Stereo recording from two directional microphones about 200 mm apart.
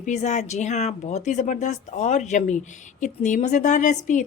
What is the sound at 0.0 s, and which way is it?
Speech, 35° left (ahead or behind).